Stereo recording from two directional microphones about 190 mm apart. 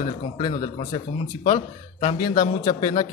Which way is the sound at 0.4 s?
25° left (ahead or behind).